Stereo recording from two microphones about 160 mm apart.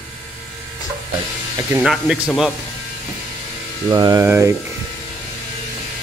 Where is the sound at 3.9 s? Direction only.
25° right (ahead or behind).